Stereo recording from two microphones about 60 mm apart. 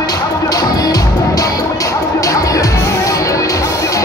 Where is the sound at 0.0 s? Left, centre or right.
Left.